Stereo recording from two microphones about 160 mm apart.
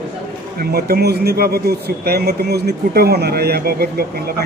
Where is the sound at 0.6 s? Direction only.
75° right (ahead or behind).